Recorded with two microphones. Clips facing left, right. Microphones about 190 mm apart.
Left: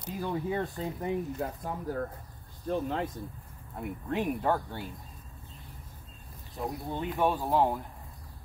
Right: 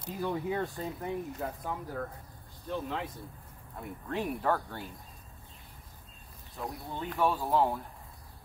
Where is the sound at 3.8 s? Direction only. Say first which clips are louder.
Left 3 dB; 15° left (ahead or behind).